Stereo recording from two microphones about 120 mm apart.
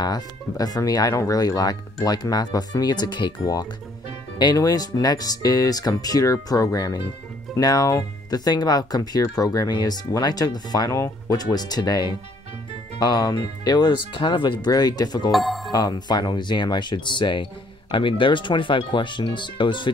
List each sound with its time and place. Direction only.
0.0 s speech: 30° left (ahead or behind)
15.3 s speech: centre (ahead or behind)
15.7 s speech: 35° left (ahead or behind)